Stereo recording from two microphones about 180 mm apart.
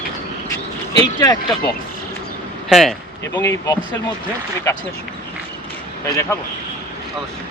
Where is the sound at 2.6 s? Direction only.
Centre (ahead or behind).